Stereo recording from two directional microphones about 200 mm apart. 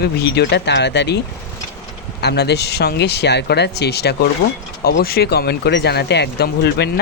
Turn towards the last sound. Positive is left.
turn(degrees=55)  # may be behind; listen again after turning